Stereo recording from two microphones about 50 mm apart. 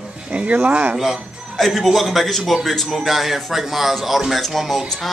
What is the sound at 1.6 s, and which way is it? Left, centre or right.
A man's voice, centre.